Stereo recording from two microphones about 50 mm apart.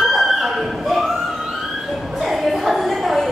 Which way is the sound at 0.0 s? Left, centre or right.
Centre.